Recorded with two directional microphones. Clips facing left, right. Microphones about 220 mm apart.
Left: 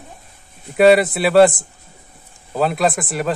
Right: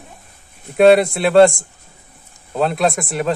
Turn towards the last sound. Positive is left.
turn(degrees=0)  # may be behind; listen again after turning